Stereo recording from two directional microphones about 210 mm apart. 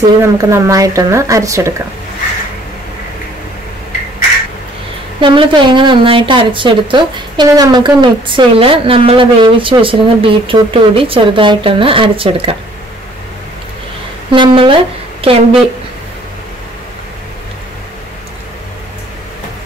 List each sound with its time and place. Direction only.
0.2 s a woman's voice: 15° right (ahead or behind)
5.2 s a woman's voice: 25° right (ahead or behind)
14.3 s a woman's voice: 25° right (ahead or behind)